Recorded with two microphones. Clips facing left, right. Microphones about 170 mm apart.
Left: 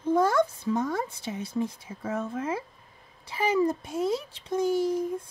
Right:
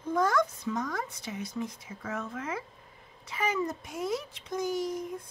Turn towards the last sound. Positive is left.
turn(degrees=30)  # may be behind; listen again after turning